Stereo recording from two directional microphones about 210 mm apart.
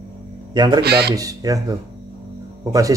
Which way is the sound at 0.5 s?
20° right (ahead or behind).